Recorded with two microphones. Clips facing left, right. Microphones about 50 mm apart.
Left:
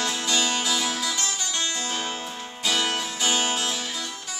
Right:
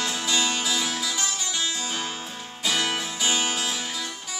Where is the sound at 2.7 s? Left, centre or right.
Centre.